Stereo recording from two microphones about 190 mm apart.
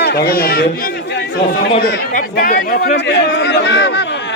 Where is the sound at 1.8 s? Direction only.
55° left (ahead or behind).